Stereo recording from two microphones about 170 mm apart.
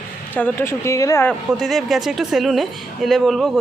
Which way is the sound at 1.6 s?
Centre (ahead or behind).